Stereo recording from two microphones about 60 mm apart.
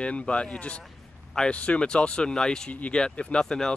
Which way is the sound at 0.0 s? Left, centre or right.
Centre.